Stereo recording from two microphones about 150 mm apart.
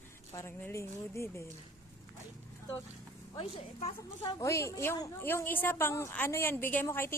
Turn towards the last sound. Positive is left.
turn(degrees=15)  # may be behind; listen again after turning